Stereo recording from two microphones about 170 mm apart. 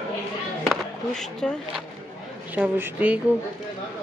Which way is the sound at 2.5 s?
10° right (ahead or behind).